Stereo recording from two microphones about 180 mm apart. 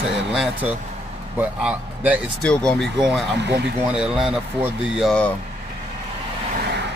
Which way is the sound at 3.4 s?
70° right (ahead or behind).